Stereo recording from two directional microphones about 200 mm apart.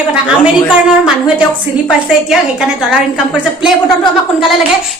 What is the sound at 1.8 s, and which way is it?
A woman's voice, centre (ahead or behind).